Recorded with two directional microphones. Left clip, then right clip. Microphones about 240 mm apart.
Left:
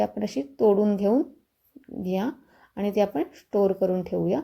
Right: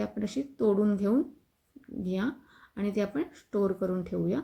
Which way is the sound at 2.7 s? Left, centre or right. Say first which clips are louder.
Left 7 dB; centre.